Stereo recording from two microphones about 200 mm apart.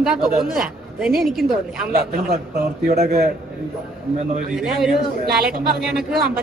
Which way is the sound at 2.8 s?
50° right (ahead or behind).